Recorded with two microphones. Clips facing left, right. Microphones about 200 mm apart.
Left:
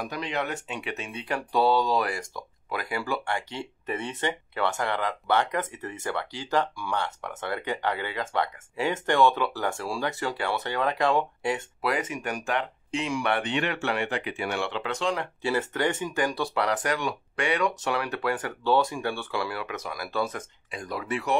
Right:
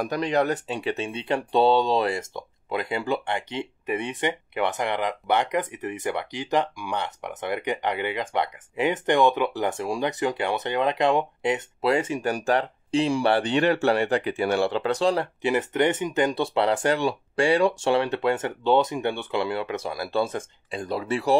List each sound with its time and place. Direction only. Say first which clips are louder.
0.0 s speech: right 7 dB; 40° right (ahead or behind)
15.4 s speech: right 4 dB; 20° right (ahead or behind)